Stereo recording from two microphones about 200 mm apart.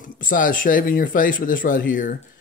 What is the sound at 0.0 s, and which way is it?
Speech, 40° left (ahead or behind).